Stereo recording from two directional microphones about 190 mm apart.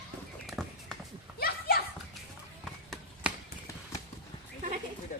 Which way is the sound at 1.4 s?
50° left (ahead or behind).